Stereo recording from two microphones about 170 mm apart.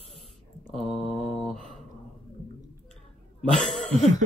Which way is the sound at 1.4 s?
Centre (ahead or behind).